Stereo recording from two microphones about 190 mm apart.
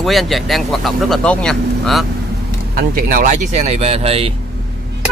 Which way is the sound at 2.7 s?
50° right (ahead or behind).